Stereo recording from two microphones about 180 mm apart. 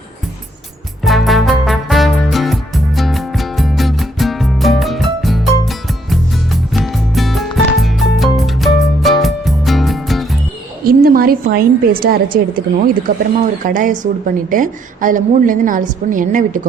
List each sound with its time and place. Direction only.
1.0 s music: centre (ahead or behind)
10.8 s a woman's voice: 55° right (ahead or behind)